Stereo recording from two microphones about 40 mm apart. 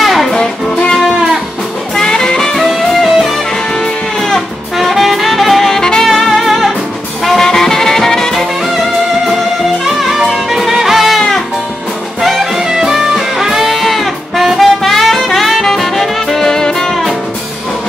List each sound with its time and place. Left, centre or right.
0.0 s music: centre
2.0 s music: centre
2.6 s music: centre
3.8 s music: centre
4.7 s saxophone: centre
5.8 s saxophone: centre
6.0 s music: centre
7.2 s music: centre
8.4 s music: centre
11.1 s music: centre
12.2 s music: centre